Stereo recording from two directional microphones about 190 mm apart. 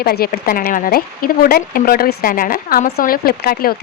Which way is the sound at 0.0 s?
55° left (ahead or behind).